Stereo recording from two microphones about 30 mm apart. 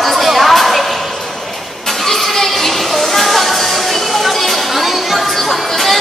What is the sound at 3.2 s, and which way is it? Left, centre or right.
Music, centre.